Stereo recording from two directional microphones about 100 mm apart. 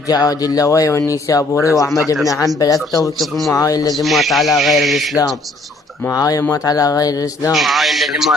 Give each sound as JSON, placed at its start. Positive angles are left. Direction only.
{"t": 0.1, "sound": "speech", "side_deg": 40}
{"t": 3.2, "sound": "speech", "side_deg": 0}
{"t": 3.5, "sound": "speech", "side_deg": 35}
{"t": 3.9, "sound": "speech", "side_deg": 0}
{"t": 6.1, "sound": "speech", "side_deg": 35}
{"t": 7.5, "sound": "speech", "side_deg": 0}